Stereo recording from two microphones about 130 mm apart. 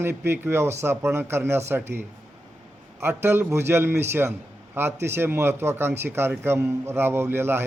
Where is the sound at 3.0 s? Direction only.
20° right (ahead or behind).